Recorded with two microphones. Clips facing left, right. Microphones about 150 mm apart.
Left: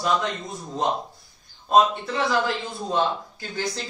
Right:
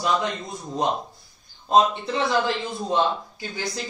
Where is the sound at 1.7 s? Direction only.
25° right (ahead or behind).